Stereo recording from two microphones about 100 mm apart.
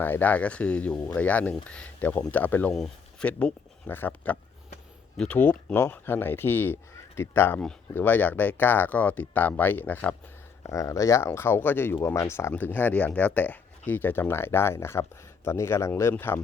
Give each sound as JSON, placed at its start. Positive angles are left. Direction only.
{"t": 0.0, "sound": "speech", "side_deg": 20}
{"t": 2.7, "sound": "a sound", "side_deg": 0}
{"t": 3.2, "sound": "speech", "side_deg": 15}
{"t": 5.1, "sound": "speech", "side_deg": 5}
{"t": 5.4, "sound": "speech", "side_deg": 20}
{"t": 10.6, "sound": "speech", "side_deg": 30}